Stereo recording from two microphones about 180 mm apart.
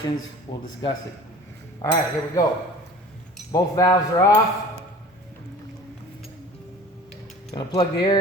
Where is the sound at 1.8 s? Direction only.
15° left (ahead or behind).